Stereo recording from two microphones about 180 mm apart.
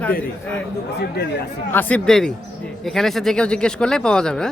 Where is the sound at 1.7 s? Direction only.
10° left (ahead or behind).